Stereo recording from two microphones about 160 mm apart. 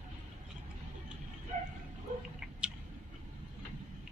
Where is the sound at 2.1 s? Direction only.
55° right (ahead or behind).